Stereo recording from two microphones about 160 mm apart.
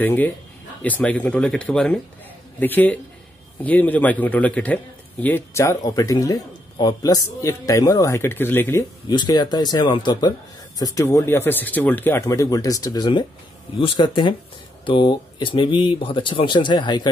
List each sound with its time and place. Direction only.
0.0 s a man's voice: 10° left (ahead or behind)
9.1 s speech: 30° left (ahead or behind)